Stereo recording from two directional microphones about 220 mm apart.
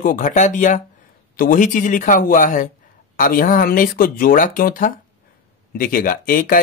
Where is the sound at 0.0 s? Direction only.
35° left (ahead or behind).